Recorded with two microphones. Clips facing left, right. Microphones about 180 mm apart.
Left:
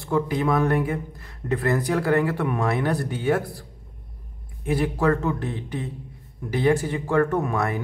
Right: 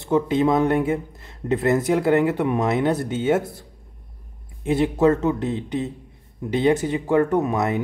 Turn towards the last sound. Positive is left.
turn(degrees=-20)  # may be behind; listen again after turning